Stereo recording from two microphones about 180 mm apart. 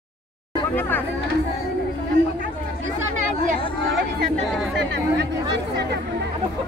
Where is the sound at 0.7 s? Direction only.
10° left (ahead or behind).